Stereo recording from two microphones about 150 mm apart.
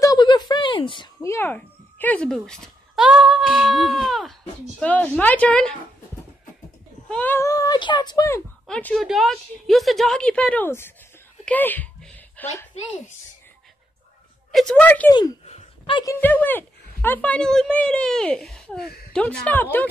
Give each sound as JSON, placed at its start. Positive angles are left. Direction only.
{"t": 0.0, "sound": "a sound", "side_deg": 25}
{"t": 1.2, "sound": "a child's voice", "side_deg": 15}
{"t": 7.1, "sound": "speech", "side_deg": 10}
{"t": 8.6, "sound": "a woman's voice", "side_deg": 5}
{"t": 11.4, "sound": "a sound", "side_deg": 10}
{"t": 14.5, "sound": "speech", "side_deg": 5}
{"t": 15.0, "sound": "speech", "side_deg": 25}
{"t": 15.4, "sound": "a sound", "side_deg": 45}
{"t": 16.2, "sound": "speech", "side_deg": 10}